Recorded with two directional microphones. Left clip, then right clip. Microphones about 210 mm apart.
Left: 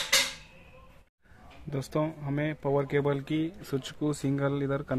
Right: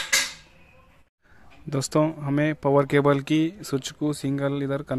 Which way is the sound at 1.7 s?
25° right (ahead or behind).